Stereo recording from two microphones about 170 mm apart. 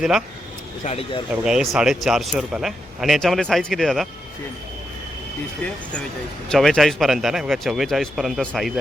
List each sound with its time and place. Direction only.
0.9 s speech: 35° left (ahead or behind)
1.3 s a man's voice: 5° right (ahead or behind)
6.5 s a man's voice: centre (ahead or behind)